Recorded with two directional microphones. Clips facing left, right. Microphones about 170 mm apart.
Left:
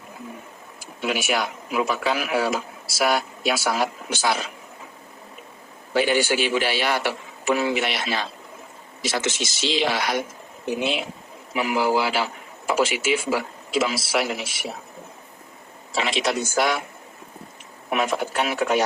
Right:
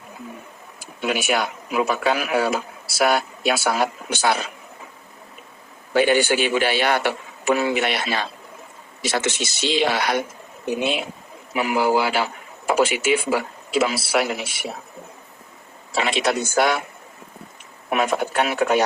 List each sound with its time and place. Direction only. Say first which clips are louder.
1.0 s a man's voice: right 2 dB; 55° right (ahead or behind)
5.9 s a man's voice: right 3 dB; 60° right (ahead or behind)
11.5 s a man's voice: right 2 dB; 55° right (ahead or behind)
16.0 s a man's voice: right 2 dB; 55° right (ahead or behind)
17.9 s a man's voice: right 3 dB; 60° right (ahead or behind)